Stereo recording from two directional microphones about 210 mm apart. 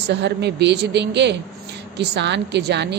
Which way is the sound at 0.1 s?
55° right (ahead or behind).